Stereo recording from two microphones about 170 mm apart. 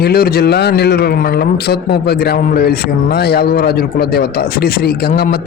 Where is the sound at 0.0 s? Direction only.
65° left (ahead or behind).